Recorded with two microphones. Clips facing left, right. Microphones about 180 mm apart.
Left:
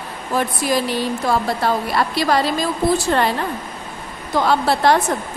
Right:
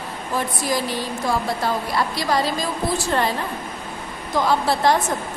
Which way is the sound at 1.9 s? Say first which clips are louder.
Left 4 dB; 65° left (ahead or behind).